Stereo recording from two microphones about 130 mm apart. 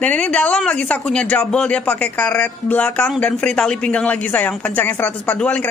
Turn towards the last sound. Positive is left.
turn(degrees=10)  # may be behind; listen again after turning